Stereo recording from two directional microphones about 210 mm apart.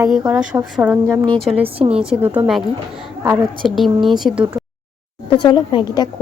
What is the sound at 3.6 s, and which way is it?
Speech, centre (ahead or behind).